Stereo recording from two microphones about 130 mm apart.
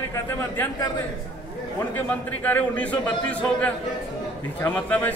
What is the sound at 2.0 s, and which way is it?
A man's voice, 10° left (ahead or behind).